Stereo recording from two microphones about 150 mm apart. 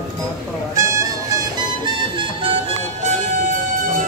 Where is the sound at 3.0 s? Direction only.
55° right (ahead or behind).